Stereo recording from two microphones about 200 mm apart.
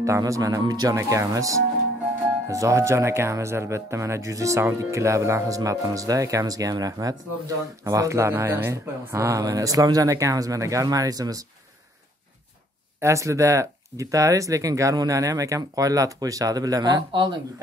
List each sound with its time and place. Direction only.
0.0 s speech: 15° right (ahead or behind)
13.0 s speech: 15° right (ahead or behind)